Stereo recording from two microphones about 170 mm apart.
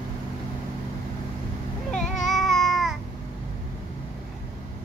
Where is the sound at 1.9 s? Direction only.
5° left (ahead or behind).